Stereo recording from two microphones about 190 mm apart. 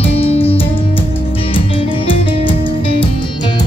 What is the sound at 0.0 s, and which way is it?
Music, 30° left (ahead or behind).